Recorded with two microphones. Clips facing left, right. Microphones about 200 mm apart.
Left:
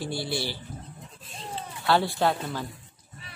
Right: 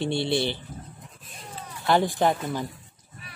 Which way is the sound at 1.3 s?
30° left (ahead or behind).